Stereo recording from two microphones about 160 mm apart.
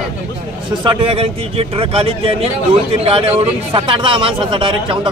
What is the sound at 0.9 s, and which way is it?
A man's voice, 35° right (ahead or behind).